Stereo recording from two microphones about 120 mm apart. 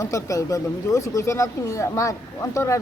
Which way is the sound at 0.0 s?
25° left (ahead or behind).